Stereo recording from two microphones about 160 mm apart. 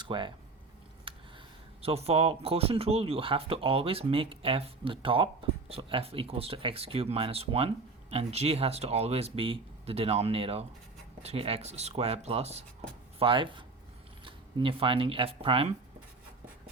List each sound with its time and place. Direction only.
0.0 s speech: 30° right (ahead or behind)
1.1 s a sound: 35° right (ahead or behind)
1.8 s speech: 40° right (ahead or behind)